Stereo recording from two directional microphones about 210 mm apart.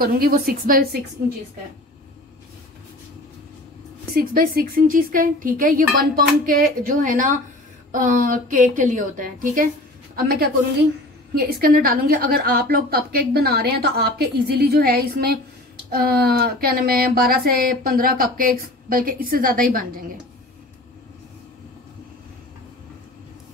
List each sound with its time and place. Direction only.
0.0 s speech: 45° right (ahead or behind)
4.1 s speech: 45° right (ahead or behind)